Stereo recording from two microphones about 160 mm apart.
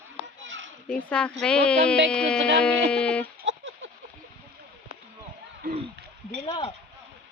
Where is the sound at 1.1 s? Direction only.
5° left (ahead or behind).